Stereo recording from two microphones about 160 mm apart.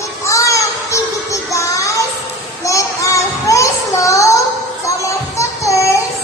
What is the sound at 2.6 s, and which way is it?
Child singing, 20° left (ahead or behind).